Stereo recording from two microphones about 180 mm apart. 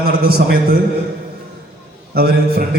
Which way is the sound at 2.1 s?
60° right (ahead or behind).